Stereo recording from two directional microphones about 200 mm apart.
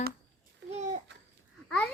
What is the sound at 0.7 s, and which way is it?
Babbling, 35° right (ahead or behind).